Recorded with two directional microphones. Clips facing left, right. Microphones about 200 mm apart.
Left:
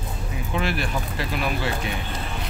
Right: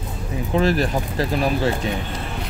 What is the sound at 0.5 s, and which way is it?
Speech, 40° right (ahead or behind).